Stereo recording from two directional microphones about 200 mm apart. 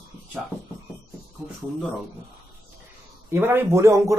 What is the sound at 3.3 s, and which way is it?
Speech, 10° right (ahead or behind).